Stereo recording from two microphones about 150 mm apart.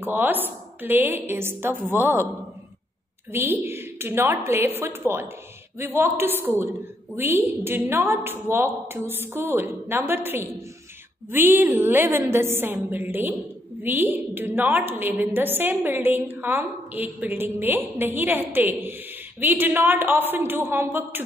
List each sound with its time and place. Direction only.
0.0 s a woman's voice: 15° right (ahead or behind)
3.3 s a woman's voice: 15° right (ahead or behind)